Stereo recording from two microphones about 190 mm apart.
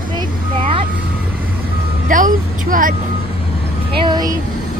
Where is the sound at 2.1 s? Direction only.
45° right (ahead or behind).